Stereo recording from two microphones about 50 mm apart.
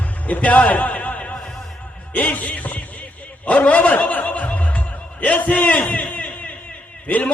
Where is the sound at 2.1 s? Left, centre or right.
Left.